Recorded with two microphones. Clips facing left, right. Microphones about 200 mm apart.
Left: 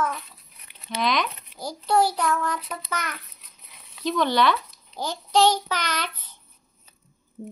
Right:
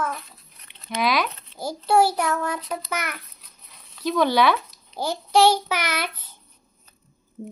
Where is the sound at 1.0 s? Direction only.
5° right (ahead or behind).